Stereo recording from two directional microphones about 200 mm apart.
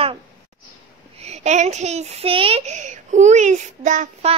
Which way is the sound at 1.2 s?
35° right (ahead or behind).